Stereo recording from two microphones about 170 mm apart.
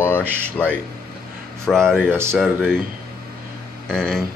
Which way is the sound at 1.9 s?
15° right (ahead or behind).